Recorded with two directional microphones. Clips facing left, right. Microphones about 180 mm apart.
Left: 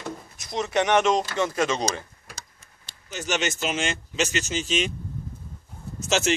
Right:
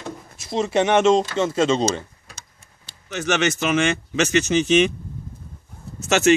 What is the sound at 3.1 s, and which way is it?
Speech, 65° right (ahead or behind).